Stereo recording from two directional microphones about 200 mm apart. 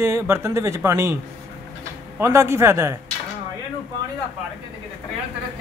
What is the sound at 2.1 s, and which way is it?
Speech, 15° right (ahead or behind).